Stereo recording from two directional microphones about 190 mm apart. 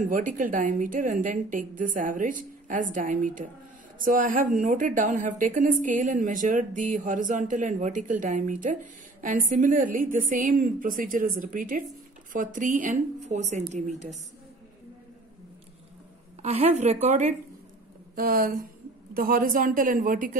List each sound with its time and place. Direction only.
0.0 s a woman's voice: 45° right (ahead or behind)
16.4 s a woman's voice: 35° right (ahead or behind)